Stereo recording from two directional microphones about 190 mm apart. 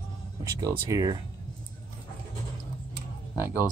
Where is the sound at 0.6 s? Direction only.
20° right (ahead or behind).